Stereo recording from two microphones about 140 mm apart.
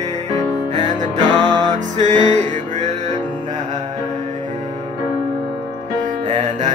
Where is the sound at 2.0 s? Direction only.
60° right (ahead or behind).